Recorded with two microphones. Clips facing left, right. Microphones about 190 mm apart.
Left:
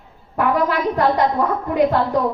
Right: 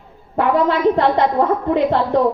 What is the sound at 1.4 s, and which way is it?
Speech, 25° right (ahead or behind).